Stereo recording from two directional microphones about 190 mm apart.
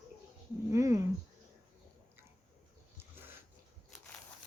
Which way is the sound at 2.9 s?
10° right (ahead or behind).